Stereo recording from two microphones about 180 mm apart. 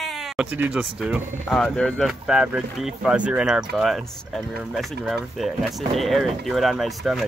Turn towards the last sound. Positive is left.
turn(degrees=0)  # may be behind; listen again after turning